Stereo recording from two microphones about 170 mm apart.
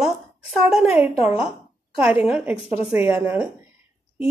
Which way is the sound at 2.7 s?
35° left (ahead or behind).